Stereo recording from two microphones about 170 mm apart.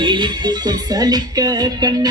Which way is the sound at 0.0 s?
25° right (ahead or behind).